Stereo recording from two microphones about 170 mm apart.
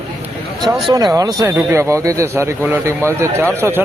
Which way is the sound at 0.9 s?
20° right (ahead or behind).